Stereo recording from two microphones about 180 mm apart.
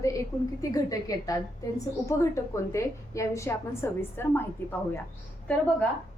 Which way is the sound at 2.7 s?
15° left (ahead or behind).